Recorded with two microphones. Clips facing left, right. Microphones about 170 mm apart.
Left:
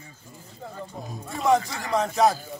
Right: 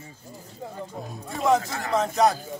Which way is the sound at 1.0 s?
Centre (ahead or behind).